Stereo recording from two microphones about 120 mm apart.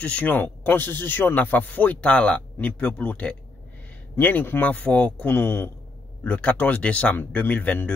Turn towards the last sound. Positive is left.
turn(degrees=15)  # may be behind; listen again after turning